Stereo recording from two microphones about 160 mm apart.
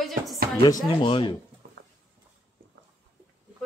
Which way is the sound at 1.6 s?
70° right (ahead or behind).